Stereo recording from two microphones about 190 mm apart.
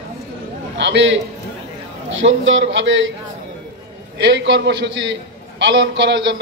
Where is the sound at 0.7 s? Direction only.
70° right (ahead or behind).